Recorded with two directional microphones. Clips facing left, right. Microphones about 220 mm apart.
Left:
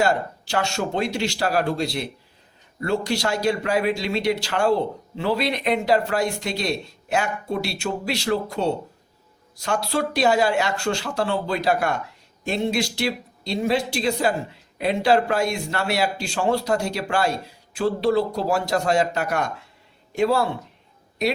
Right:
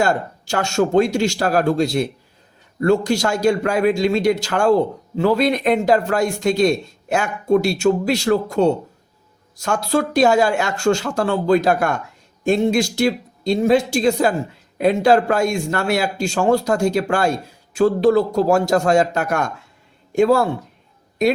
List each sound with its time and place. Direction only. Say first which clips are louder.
0.0 s a man's voice: right 2 dB; 45° right (ahead or behind)